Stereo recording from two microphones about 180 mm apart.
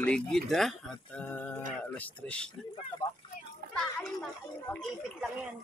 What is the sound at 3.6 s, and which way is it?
Children playing, 55° right (ahead or behind).